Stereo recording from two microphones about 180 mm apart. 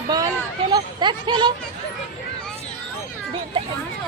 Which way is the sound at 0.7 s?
25° right (ahead or behind).